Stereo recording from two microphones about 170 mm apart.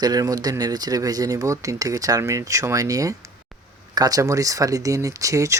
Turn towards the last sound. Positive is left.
turn(degrees=-20)  # may be behind; listen again after turning